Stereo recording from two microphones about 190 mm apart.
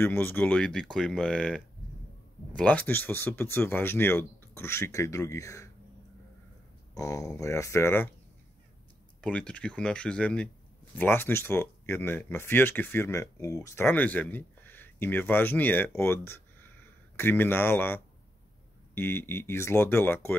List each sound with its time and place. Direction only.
0.0 s speech: 10° left (ahead or behind)
6.9 s speech: 15° left (ahead or behind)
9.2 s speech: 5° left (ahead or behind)